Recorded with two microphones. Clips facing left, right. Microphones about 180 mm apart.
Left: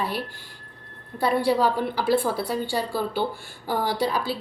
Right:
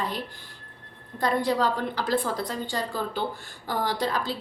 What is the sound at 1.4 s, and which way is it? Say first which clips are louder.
A woman's voice: left 3 dB; 10° left (ahead or behind).